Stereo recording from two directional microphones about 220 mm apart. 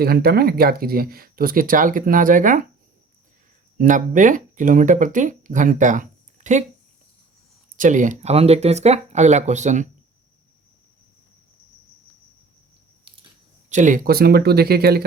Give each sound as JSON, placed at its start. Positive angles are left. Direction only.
{"t": 0.0, "sound": "speech", "side_deg": -45}
{"t": 3.8, "sound": "speech", "side_deg": -35}
{"t": 7.8, "sound": "speech", "side_deg": -35}
{"t": 13.7, "sound": "speech", "side_deg": -35}